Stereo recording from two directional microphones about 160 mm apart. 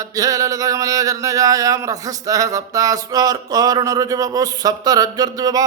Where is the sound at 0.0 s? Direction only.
20° right (ahead or behind).